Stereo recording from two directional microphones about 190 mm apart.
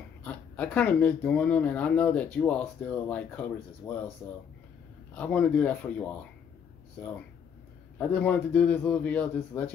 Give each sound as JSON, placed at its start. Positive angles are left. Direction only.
{"t": 0.2, "sound": "speech", "side_deg": 5}
{"t": 5.1, "sound": "speech", "side_deg": 5}